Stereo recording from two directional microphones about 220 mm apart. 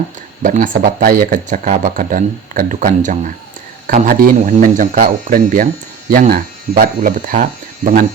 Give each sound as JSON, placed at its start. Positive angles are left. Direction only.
{"t": 0.4, "sound": "a man's voice", "side_deg": -35}